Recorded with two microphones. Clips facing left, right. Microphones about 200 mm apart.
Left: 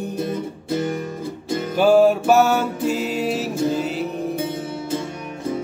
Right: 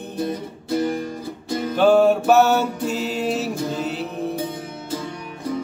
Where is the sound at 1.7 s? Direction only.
5° left (ahead or behind).